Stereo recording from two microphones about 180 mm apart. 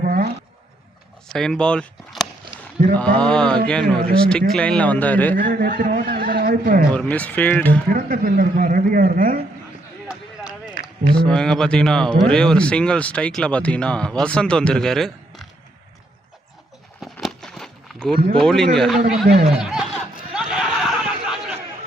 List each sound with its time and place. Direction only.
0.0 s a sound: 55° right (ahead or behind)
1.3 s speech: 5° left (ahead or behind)
5.4 s a man's voice: 50° right (ahead or behind)
6.9 s speech: 5° left (ahead or behind)
7.9 s a man's voice: 55° right (ahead or behind)
11.2 s speech: 5° left (ahead or behind)
17.0 s a sound: centre (ahead or behind)
18.4 s speech: 5° left (ahead or behind)
19.5 s a sound: 5° right (ahead or behind)